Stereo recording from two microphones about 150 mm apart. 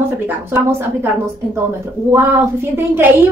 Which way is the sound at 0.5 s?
15° right (ahead or behind).